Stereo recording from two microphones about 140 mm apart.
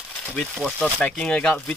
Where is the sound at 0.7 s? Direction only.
5° left (ahead or behind).